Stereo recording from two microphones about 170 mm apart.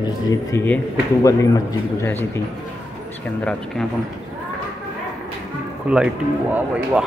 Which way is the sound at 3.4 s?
5° left (ahead or behind).